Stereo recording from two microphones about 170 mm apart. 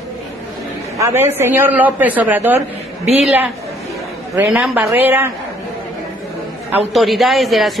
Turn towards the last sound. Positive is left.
turn(degrees=0)  # may be behind; listen again after turning